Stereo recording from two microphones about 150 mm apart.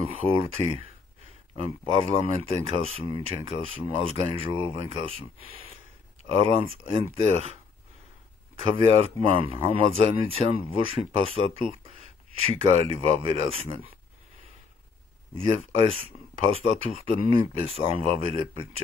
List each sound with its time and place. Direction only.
0.0 s speech: 40° right (ahead or behind)
8.7 s speech: 40° right (ahead or behind)
15.3 s speech: 40° right (ahead or behind)